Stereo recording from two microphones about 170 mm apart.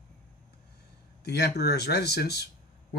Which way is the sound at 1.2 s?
70° left (ahead or behind).